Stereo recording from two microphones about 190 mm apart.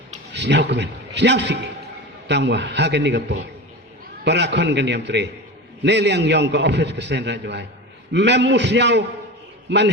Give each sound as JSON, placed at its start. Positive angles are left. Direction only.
{"t": 0.3, "sound": "a man's voice", "side_deg": -65}